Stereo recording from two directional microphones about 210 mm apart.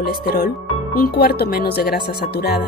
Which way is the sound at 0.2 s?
45° left (ahead or behind).